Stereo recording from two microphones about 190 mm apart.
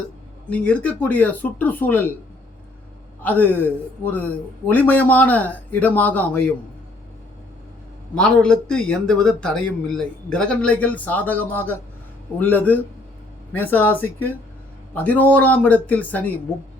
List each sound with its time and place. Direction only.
0.5 s a man's voice: 5° left (ahead or behind)
3.2 s a man's voice: 10° left (ahead or behind)
8.1 s a man's voice: 5° left (ahead or behind)